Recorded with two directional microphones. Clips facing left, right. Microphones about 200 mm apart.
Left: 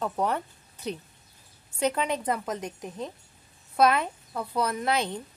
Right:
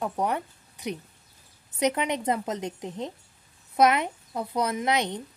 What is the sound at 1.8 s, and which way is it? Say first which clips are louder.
A woman's voice: right 1 dB; 20° right (ahead or behind).